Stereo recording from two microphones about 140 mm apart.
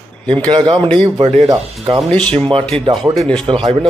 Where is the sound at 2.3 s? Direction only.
40° right (ahead or behind).